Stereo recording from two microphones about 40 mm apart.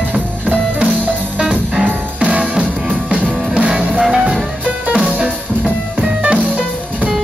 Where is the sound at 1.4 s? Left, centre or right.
Right.